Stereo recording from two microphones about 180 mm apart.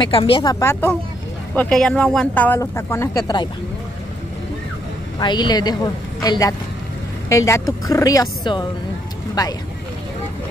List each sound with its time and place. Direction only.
0.0 s speech: 30° left (ahead or behind)
5.2 s speech: 25° left (ahead or behind)